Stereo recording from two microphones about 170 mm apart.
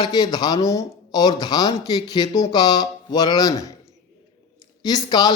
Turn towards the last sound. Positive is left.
turn(degrees=25)  # may be behind; listen again after turning